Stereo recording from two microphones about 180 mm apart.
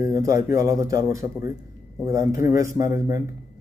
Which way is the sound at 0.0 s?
15° right (ahead or behind).